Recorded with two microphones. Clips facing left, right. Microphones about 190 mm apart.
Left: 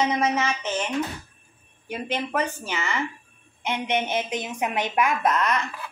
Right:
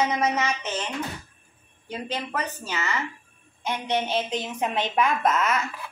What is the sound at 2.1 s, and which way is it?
A woman's voice, 20° left (ahead or behind).